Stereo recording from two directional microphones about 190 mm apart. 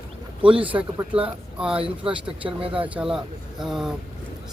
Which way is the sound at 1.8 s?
30° right (ahead or behind).